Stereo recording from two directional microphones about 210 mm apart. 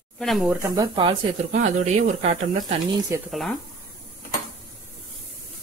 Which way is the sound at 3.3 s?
Centre (ahead or behind).